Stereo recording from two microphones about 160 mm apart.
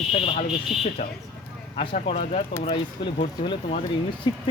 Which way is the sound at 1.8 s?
40° left (ahead or behind).